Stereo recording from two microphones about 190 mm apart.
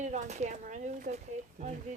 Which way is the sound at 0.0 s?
35° right (ahead or behind).